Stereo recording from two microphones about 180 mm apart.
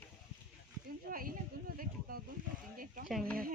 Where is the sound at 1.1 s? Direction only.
50° right (ahead or behind).